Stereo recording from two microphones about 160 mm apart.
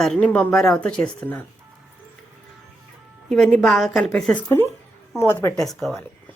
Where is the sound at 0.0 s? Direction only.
5° left (ahead or behind).